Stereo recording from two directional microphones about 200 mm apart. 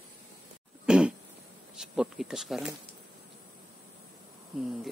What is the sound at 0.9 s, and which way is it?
Throat clearing, 5° right (ahead or behind).